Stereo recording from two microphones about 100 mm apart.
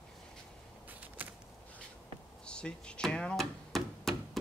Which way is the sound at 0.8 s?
15° right (ahead or behind).